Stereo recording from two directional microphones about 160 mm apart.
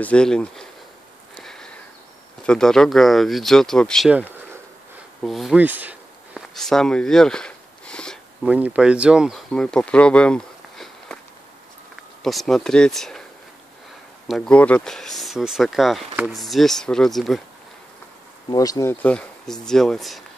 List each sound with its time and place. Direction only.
0.0 s speech: 5° left (ahead or behind)
1.4 s sniff: 5° left (ahead or behind)
2.4 s speech: 5° left (ahead or behind)
5.2 s speech: centre (ahead or behind)
5.6 s a sound: 10° right (ahead or behind)
6.5 s a sound: 5° left (ahead or behind)
8.5 s speech: 10° right (ahead or behind)
9.5 s a sound: 5° left (ahead or behind)
12.2 s speech: centre (ahead or behind)
14.2 s speech: centre (ahead or behind)
18.5 s speech: 25° left (ahead or behind)
19.0 s speech: 5° left (ahead or behind)